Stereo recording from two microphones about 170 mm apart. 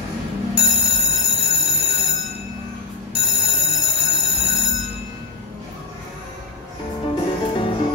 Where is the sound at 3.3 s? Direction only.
30° left (ahead or behind).